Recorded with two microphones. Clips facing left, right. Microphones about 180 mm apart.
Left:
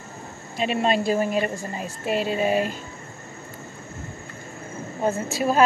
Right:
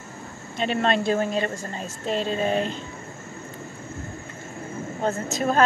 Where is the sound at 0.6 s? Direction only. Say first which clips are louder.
Left 1 dB; 5° left (ahead or behind).